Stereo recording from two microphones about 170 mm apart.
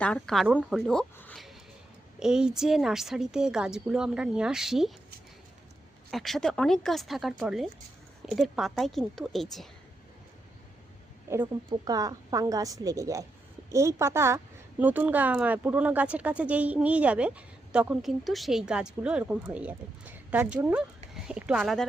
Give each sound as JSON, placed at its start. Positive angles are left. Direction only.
{"t": 0.0, "sound": "a woman's voice", "side_deg": 5}
{"t": 0.4, "sound": "a woman's voice", "side_deg": -5}
{"t": 6.1, "sound": "a woman's voice", "side_deg": 0}
{"t": 11.7, "sound": "a woman's voice", "side_deg": -20}